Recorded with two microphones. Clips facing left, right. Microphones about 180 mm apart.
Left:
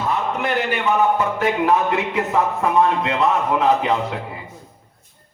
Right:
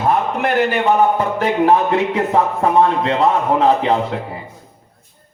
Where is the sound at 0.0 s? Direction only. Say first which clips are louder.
Right 5 dB; 45° right (ahead or behind).